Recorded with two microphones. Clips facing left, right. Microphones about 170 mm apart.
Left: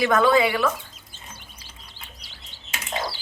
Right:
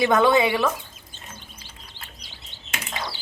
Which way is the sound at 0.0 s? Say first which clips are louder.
Even; 20° right (ahead or behind).